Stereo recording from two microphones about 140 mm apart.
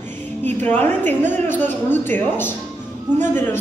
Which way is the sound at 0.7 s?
10° left (ahead or behind).